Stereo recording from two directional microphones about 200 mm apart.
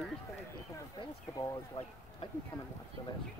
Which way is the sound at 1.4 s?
20° left (ahead or behind).